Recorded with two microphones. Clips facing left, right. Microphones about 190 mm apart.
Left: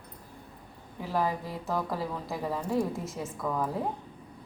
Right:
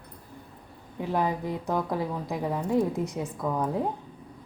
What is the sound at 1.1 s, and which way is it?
Speech, 20° right (ahead or behind).